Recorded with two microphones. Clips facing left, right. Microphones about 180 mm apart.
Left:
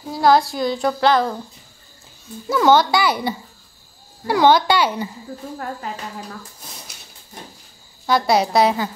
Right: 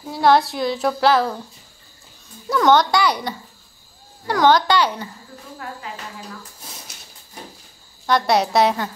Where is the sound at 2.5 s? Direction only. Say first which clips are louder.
Left 1 dB; 5° left (ahead or behind).